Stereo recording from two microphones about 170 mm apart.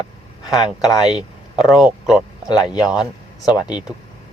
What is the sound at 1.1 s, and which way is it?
Speech, centre (ahead or behind).